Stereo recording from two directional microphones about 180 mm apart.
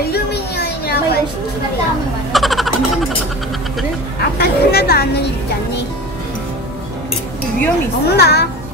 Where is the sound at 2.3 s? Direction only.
Centre (ahead or behind).